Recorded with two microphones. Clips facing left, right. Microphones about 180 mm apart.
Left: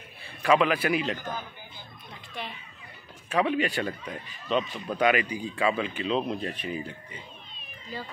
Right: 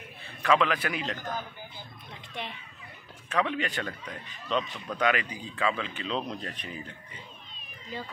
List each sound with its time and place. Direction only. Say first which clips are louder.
0.4 s speech: left 3 dB; 10° left (ahead or behind)
2.4 s a child's voice: even; 20° right (ahead or behind)
3.3 s speech: left 4 dB; 10° left (ahead or behind)
7.9 s a child's voice: even; 20° right (ahead or behind)